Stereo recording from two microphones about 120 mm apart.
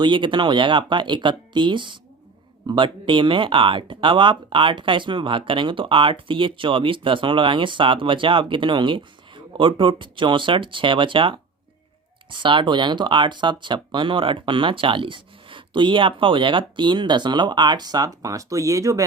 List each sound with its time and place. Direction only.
0.0 s speech: 40° right (ahead or behind)